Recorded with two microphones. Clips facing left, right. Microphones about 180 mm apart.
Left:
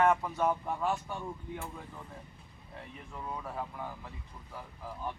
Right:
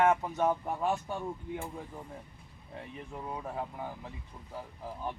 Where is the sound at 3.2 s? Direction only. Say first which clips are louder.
Right 1 dB; 25° right (ahead or behind).